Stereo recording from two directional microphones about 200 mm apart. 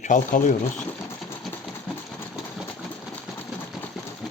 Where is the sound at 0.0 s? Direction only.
40° left (ahead or behind).